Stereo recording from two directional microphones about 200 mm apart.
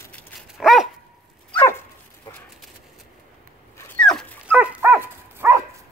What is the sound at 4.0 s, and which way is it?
Dog, 5° left (ahead or behind).